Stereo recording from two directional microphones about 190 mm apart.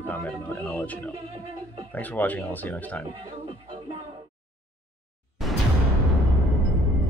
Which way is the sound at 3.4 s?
35° right (ahead or behind).